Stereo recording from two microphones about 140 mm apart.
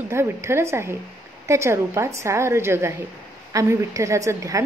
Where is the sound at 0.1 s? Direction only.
20° right (ahead or behind).